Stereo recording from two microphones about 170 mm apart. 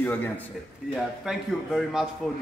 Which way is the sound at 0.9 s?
Centre (ahead or behind).